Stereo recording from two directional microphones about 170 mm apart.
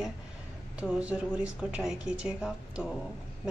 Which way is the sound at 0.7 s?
5° right (ahead or behind).